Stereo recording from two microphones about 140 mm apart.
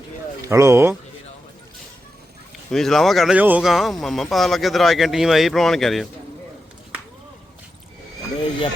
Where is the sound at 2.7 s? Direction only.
5° left (ahead or behind).